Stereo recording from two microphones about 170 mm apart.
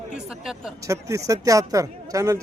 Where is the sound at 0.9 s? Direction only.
20° right (ahead or behind).